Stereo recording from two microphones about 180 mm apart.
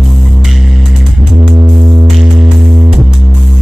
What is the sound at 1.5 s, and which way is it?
Music, 25° right (ahead or behind).